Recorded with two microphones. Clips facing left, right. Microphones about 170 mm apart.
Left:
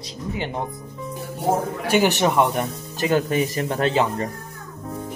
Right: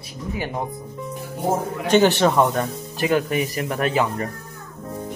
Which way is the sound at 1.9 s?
15° left (ahead or behind).